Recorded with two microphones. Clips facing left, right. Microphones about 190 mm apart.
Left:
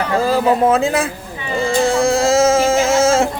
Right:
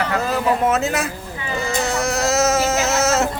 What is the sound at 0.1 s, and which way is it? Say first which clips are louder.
A man's voice: left 5 dB; 30° left (ahead or behind).